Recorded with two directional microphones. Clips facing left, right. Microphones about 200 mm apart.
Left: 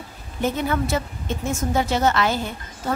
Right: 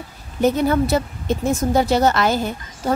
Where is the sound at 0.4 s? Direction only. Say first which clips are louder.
Right 6 dB; 40° right (ahead or behind).